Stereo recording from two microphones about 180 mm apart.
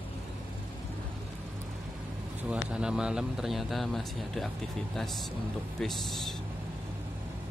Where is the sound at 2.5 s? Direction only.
5° right (ahead or behind).